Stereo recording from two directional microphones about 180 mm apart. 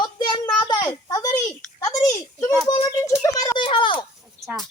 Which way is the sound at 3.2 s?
20° left (ahead or behind).